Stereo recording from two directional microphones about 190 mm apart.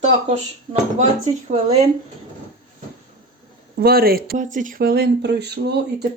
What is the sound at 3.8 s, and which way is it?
Speech, 50° right (ahead or behind).